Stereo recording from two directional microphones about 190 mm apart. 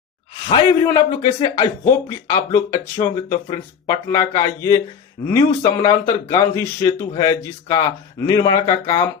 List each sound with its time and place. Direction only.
0.5 s speech: 20° left (ahead or behind)